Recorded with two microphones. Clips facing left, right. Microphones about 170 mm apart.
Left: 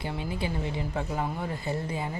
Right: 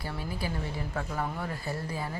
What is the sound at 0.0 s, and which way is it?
Speech, 25° left (ahead or behind).